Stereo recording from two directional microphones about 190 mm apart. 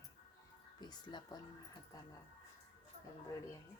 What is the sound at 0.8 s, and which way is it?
Speech, 25° left (ahead or behind).